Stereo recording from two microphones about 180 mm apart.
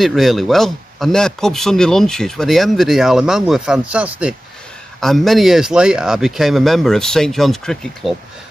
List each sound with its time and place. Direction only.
0.0 s speech: centre (ahead or behind)